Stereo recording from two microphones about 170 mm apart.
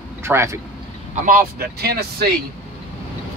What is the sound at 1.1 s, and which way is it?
Speech, 50° right (ahead or behind).